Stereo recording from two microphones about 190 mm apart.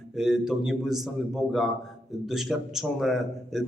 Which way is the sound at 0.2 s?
Centre (ahead or behind).